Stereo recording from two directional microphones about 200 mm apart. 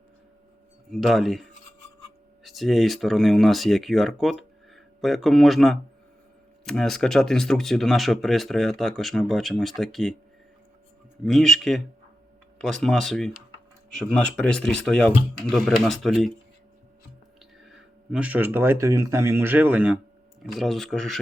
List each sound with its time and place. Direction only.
0.9 s speech: centre (ahead or behind)
11.2 s speech: centre (ahead or behind)
17.6 s speech: 5° right (ahead or behind)